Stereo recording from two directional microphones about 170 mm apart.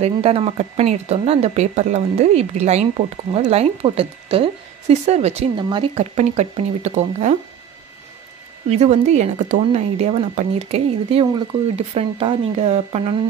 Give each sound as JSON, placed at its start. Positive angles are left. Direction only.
{"t": 0.0, "sound": "speech", "side_deg": -35}
{"t": 5.6, "sound": "speech", "side_deg": -30}
{"t": 6.1, "sound": "speech", "side_deg": -40}
{"t": 8.6, "sound": "speech", "side_deg": -40}